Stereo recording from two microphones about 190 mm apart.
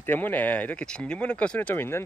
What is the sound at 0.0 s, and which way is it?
Speech, 10° left (ahead or behind).